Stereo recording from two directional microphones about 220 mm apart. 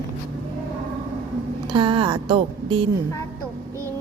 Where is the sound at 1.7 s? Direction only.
20° right (ahead or behind).